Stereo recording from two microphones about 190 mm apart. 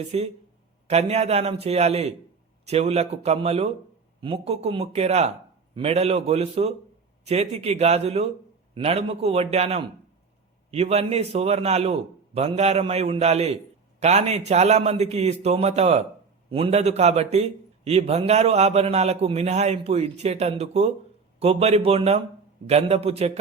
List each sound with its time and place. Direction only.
0.1 s a man's voice: 35° right (ahead or behind)